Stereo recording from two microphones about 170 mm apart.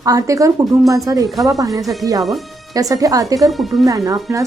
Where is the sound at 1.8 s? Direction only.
Centre (ahead or behind).